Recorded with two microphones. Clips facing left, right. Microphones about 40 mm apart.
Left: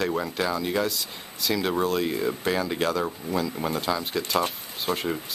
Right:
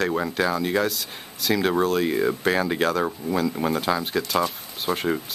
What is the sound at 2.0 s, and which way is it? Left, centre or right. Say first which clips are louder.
Speech: right 4 dB; centre.